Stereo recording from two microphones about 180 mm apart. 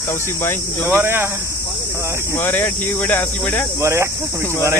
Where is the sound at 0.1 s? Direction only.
15° left (ahead or behind).